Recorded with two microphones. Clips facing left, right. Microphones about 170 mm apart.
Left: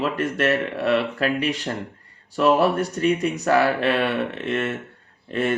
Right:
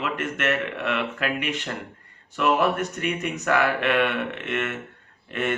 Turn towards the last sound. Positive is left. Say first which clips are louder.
# left 4 dB
turn(degrees=35)  # may be behind; listen again after turning